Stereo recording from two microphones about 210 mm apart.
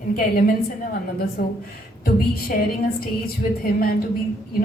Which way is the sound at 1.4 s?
45° left (ahead or behind).